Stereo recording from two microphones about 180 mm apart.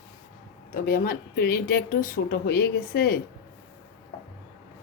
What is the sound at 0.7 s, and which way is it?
A woman's voice, 55° left (ahead or behind).